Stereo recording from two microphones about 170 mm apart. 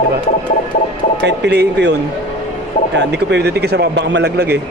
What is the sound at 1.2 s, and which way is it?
Speech, 85° right.